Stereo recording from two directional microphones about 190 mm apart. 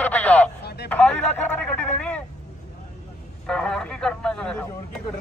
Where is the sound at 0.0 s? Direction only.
10° left (ahead or behind).